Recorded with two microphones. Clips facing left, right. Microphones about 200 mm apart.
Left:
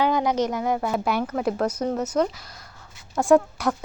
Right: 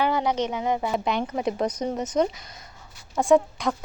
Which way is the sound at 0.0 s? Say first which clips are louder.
Left 2 dB; 15° left (ahead or behind).